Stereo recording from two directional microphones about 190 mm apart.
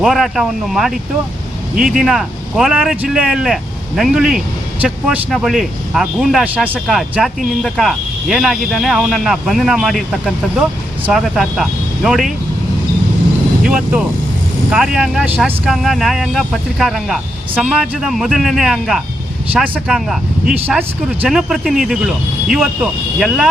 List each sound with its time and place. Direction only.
0.0 s speech: centre (ahead or behind)
13.6 s speech: 5° right (ahead or behind)